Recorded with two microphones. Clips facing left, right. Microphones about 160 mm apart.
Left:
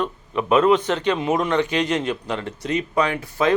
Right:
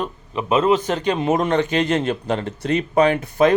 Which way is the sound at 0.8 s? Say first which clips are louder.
Right 1 dB; 40° right (ahead or behind).